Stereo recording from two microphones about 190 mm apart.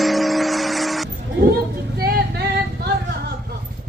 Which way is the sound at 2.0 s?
55° right (ahead or behind).